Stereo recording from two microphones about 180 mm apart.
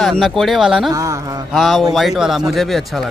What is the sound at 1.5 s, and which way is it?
Speech, centre (ahead or behind).